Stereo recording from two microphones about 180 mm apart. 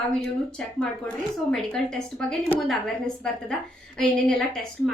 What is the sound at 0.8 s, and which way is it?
A woman's voice, 5° left (ahead or behind).